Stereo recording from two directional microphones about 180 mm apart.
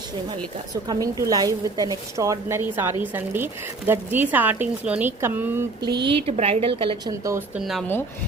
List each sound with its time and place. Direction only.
0.9 s a woman's voice: 20° right (ahead or behind)
6.1 s a woman's voice: 30° right (ahead or behind)
7.5 s speech: centre (ahead or behind)